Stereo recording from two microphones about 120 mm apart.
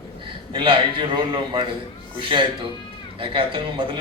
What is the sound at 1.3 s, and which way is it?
A man's voice, 40° right (ahead or behind).